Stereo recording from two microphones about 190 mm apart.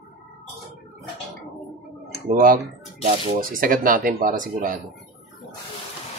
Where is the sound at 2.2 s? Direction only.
50° right (ahead or behind).